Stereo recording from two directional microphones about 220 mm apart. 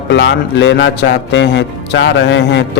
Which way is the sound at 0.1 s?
55° left (ahead or behind).